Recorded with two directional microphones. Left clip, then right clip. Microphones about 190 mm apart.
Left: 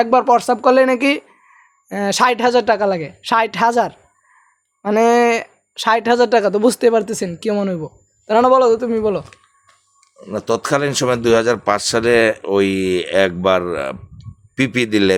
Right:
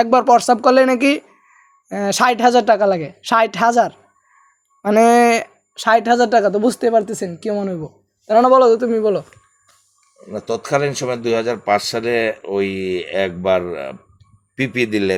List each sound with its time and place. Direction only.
0.0 s speech: 10° right (ahead or behind)
5.7 s speech: 5° left (ahead or behind)
8.3 s speech: 5° left (ahead or behind)
10.2 s speech: 60° left (ahead or behind)